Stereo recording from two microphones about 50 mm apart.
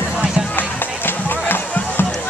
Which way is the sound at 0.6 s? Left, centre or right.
Left.